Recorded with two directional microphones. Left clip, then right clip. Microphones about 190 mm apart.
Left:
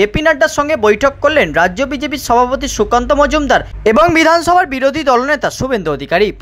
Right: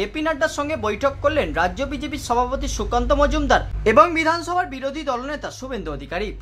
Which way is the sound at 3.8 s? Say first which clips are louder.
Left 6 dB; 50° left (ahead or behind).